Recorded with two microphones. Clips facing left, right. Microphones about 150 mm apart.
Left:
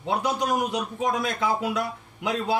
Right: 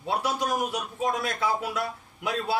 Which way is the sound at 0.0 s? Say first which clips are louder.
Left 2 dB; 20° left (ahead or behind).